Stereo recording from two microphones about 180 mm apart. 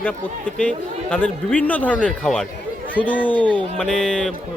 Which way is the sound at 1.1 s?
5° left (ahead or behind).